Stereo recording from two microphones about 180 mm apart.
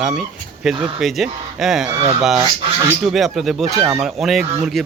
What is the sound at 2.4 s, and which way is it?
Speech, 20° right (ahead or behind).